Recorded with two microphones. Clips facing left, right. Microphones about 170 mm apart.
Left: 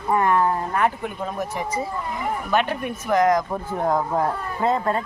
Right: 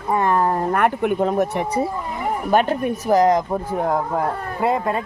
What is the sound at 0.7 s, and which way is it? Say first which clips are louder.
Speech: right 5 dB; 60° right (ahead or behind).